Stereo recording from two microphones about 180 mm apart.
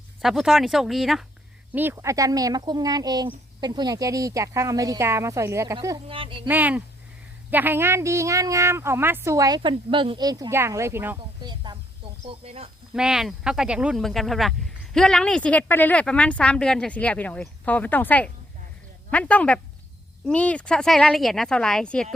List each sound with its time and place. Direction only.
0.2 s speech: centre (ahead or behind)
1.7 s speech: 10° right (ahead or behind)
6.1 s speech: 30° right (ahead or behind)
6.5 s speech: 10° right (ahead or behind)
11.4 s speech: 25° right (ahead or behind)
12.9 s speech: 5° right (ahead or behind)